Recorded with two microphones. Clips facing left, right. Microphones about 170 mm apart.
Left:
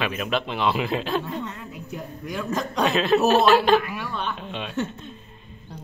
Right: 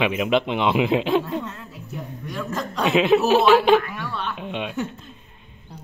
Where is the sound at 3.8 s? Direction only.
10° left (ahead or behind).